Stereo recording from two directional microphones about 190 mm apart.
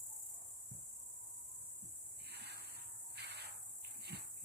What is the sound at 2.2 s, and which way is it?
Hiss, 60° right (ahead or behind).